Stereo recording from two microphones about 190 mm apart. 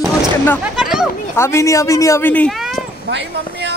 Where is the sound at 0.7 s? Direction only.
5° right (ahead or behind).